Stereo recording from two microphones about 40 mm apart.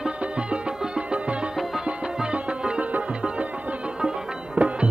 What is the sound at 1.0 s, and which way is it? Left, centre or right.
Music, right.